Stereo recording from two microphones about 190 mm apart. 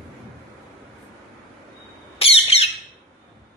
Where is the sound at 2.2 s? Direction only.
30° left (ahead or behind).